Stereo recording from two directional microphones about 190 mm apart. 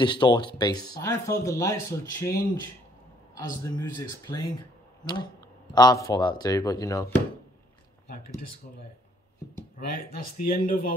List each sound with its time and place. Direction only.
0.0 s speech: 25° left (ahead or behind)
9.8 s speech: 50° left (ahead or behind)